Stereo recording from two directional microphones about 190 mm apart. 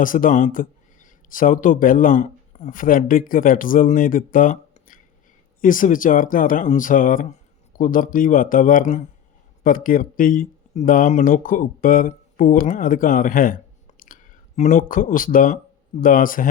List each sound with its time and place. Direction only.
0.0 s speech: 45° left (ahead or behind)